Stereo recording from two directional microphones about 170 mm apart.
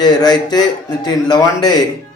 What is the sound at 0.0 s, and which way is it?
Speech, 25° left (ahead or behind).